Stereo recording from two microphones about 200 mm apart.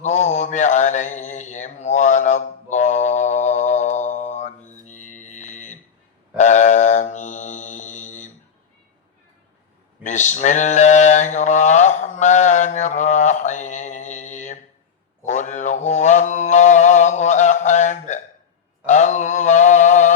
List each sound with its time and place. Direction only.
0.0 s mantra: 35° left (ahead or behind)
10.0 s mantra: 35° left (ahead or behind)